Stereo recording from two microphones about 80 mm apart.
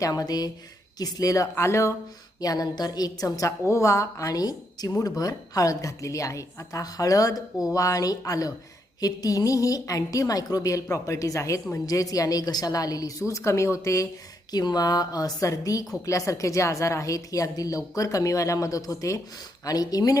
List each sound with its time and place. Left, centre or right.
0.0 s a woman's voice: left
2.4 s a woman's voice: left
14.5 s a woman's voice: left